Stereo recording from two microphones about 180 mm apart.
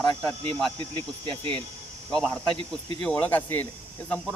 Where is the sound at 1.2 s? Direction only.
30° right (ahead or behind).